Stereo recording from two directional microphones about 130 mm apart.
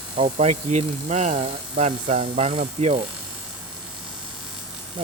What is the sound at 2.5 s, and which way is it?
Speech, 45° right (ahead or behind).